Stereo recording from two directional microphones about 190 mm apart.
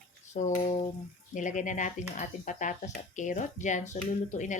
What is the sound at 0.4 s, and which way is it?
Speech, 40° left (ahead or behind).